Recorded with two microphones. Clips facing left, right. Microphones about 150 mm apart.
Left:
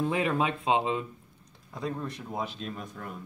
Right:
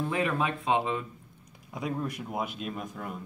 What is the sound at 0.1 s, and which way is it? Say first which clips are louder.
Speech: left 1 dB; 20° left (ahead or behind).